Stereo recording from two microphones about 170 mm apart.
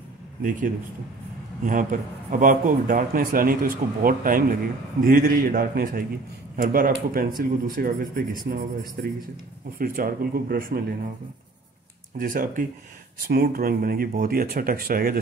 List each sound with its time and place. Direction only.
0.4 s speech: 50° right (ahead or behind)
12.2 s speech: 50° right (ahead or behind)
13.3 s speech: 65° right (ahead or behind)